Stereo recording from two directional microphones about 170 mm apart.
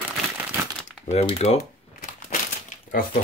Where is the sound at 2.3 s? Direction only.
50° left (ahead or behind).